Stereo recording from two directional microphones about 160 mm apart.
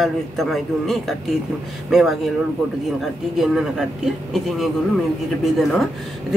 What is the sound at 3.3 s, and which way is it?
Speech, centre (ahead or behind).